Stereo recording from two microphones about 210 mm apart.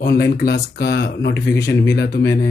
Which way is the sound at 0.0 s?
50° left (ahead or behind).